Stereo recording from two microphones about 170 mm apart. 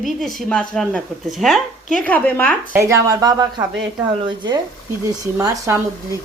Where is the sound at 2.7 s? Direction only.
20° right (ahead or behind).